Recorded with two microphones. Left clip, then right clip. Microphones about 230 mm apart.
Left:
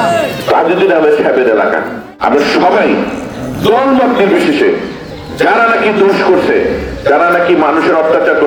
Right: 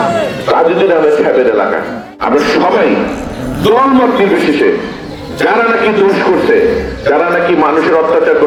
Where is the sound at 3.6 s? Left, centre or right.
Centre.